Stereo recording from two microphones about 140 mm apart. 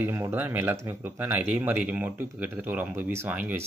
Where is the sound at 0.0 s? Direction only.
15° right (ahead or behind).